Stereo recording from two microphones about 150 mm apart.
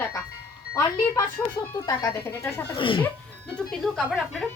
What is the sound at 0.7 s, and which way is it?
Speech, 25° left (ahead or behind).